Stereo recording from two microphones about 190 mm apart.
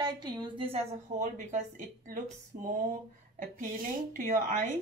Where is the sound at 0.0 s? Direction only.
20° right (ahead or behind).